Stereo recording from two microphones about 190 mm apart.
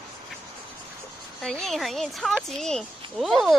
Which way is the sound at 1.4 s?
Centre (ahead or behind).